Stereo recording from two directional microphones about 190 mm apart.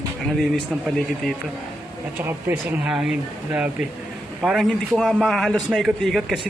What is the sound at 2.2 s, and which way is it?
A man's voice, 10° right (ahead or behind).